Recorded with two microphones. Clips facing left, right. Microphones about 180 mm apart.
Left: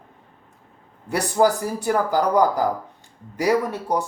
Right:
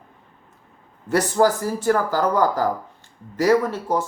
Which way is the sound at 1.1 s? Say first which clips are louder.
Right 1 dB; 15° left (ahead or behind).